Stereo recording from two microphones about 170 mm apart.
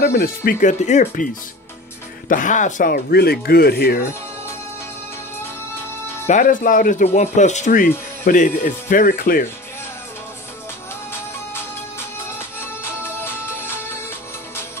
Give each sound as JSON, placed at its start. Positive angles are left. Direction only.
{"t": 0.0, "sound": "speech", "side_deg": 65}
{"t": 5.4, "sound": "music", "side_deg": 15}
{"t": 6.2, "sound": "speech", "side_deg": 50}
{"t": 12.4, "sound": "music", "side_deg": 15}